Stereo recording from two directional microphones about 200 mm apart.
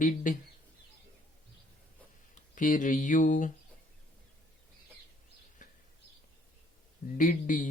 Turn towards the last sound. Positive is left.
turn(degrees=40)  # may be behind; listen again after turning